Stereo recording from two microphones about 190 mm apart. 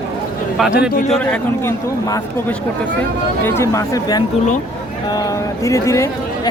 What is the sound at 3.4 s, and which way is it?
Speech, 15° left (ahead or behind).